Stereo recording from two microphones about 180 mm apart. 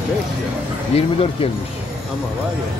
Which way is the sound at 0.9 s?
30° left (ahead or behind).